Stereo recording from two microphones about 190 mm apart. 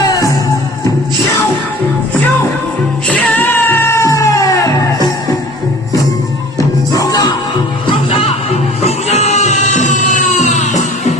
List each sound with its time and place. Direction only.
3.1 s cat: 5° left (ahead or behind)
6.6 s music: 20° left (ahead or behind)
8.1 s music: 30° left (ahead or behind)